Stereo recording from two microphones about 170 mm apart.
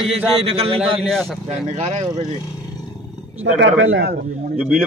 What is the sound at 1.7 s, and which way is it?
Speech, 45° right (ahead or behind).